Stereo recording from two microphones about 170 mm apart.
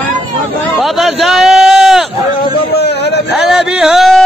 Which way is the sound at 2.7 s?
80° left.